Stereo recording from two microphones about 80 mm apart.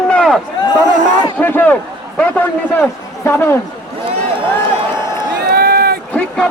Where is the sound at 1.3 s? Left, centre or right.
Left.